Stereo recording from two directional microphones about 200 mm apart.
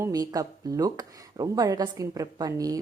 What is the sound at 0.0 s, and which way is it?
A woman's voice, 20° right (ahead or behind).